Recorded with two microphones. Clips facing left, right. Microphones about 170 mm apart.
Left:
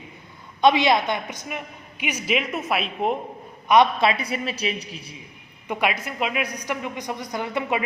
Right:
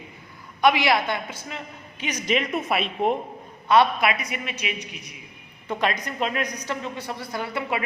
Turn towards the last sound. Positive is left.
turn(degrees=20)  # may be behind; listen again after turning